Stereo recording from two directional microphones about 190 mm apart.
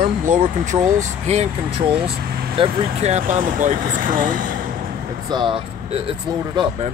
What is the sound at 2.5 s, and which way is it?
Speech, 30° right (ahead or behind).